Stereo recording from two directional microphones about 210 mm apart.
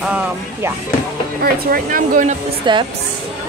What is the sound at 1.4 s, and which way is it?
Speech, 45° right (ahead or behind).